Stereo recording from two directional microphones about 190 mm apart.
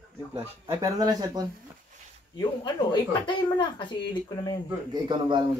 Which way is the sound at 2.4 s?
20° left (ahead or behind).